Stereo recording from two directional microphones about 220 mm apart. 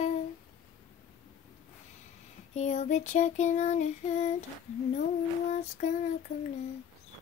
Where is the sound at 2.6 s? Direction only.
30° left (ahead or behind).